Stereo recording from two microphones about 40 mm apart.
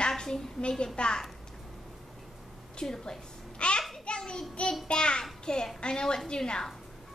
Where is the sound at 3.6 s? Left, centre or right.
Left.